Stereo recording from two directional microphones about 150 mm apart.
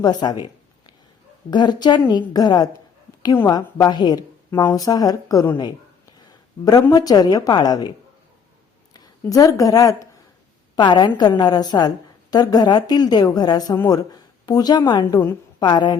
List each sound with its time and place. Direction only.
0.0 s a woman's voice: 30° left (ahead or behind)
1.5 s a woman's voice: 30° left (ahead or behind)
6.9 s a woman's voice: 25° left (ahead or behind)
9.2 s a woman's voice: 20° left (ahead or behind)